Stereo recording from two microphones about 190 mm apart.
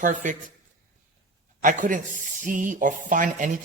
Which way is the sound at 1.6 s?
45° right (ahead or behind).